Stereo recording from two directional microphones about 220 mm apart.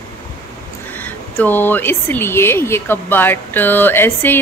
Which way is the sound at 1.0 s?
10° left (ahead or behind).